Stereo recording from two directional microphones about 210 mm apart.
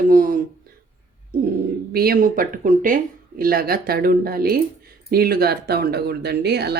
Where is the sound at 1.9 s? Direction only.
45° right (ahead or behind).